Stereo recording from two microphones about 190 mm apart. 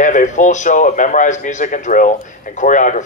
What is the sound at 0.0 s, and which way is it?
A man's voice, 40° left (ahead or behind).